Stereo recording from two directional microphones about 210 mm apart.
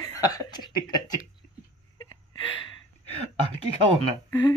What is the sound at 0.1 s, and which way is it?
Chuckle, 15° left (ahead or behind).